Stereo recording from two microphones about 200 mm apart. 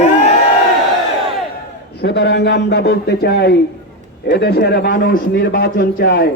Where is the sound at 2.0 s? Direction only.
55° left (ahead or behind).